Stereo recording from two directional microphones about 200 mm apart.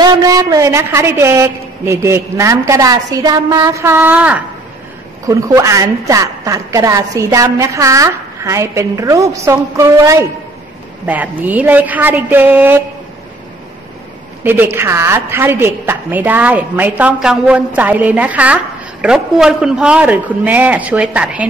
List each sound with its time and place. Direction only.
0.0 s a woman's voice: 20° right (ahead or behind)
14.4 s a woman's voice: 10° right (ahead or behind)